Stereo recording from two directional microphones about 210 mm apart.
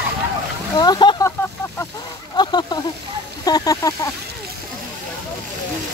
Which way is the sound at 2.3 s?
20° left (ahead or behind).